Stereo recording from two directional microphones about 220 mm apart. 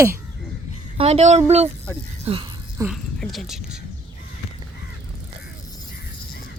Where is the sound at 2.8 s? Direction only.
Centre (ahead or behind).